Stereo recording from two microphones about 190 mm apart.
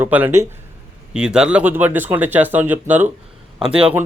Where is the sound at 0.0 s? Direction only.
10° right (ahead or behind).